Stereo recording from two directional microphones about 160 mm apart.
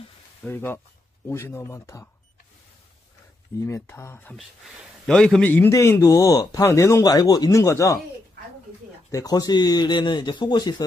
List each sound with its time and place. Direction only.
0.4 s a man's voice: 15° left (ahead or behind)
3.6 s a man's voice: 15° left (ahead or behind)
4.4 s a man's voice: centre (ahead or behind); by 8.0 s 20° left (ahead or behind)
9.1 s speech: 25° left (ahead or behind)